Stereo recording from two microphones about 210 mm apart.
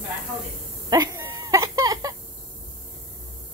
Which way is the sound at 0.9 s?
20° right (ahead or behind).